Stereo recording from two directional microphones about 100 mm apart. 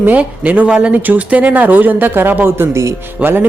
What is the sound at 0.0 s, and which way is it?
Speech, 15° right (ahead or behind).